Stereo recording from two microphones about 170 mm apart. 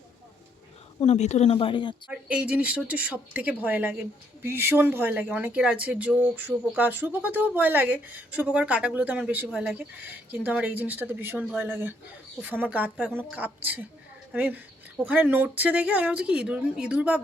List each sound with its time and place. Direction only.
1.0 s speech: 40° left (ahead or behind)
2.0 s speech: 5° right (ahead or behind)